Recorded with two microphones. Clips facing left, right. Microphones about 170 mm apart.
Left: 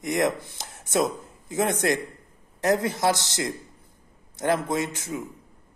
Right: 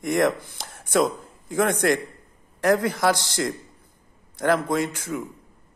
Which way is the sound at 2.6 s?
20° left (ahead or behind).